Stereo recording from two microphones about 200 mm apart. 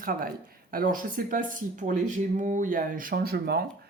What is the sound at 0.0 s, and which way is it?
Speech, 45° right (ahead or behind).